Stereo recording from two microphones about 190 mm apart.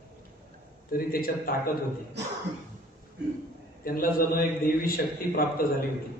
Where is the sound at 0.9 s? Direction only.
50° left (ahead or behind).